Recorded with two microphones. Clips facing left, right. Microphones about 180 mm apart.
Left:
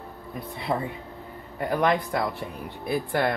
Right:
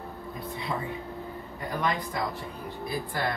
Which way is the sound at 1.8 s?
65° left (ahead or behind).